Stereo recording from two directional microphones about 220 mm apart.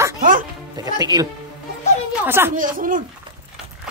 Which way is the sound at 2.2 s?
10° right (ahead or behind).